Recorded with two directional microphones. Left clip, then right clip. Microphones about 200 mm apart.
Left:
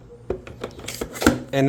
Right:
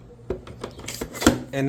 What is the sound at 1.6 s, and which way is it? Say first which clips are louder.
Speech: left 6 dB; 55° left (ahead or behind).